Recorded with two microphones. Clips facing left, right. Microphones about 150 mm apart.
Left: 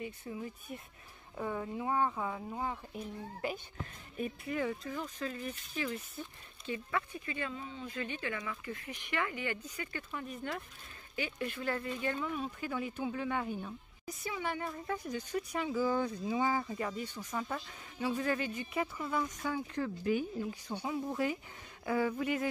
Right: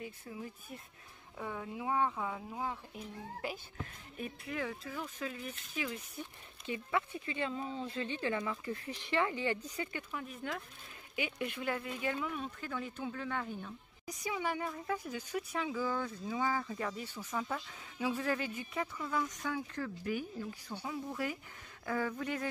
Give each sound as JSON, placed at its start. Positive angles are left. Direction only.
{"t": 0.0, "sound": "speech", "side_deg": 0}
{"t": 6.6, "sound": "speech", "side_deg": -20}
{"t": 10.1, "sound": "speech", "side_deg": 0}
{"t": 11.1, "sound": "speech", "side_deg": -15}
{"t": 12.5, "sound": "speech", "side_deg": 10}
{"t": 14.0, "sound": "speech", "side_deg": -15}
{"t": 15.6, "sound": "speech", "side_deg": 10}
{"t": 16.7, "sound": "speech", "side_deg": 0}
{"t": 18.9, "sound": "speech", "side_deg": 15}
{"t": 21.8, "sound": "speech", "side_deg": 10}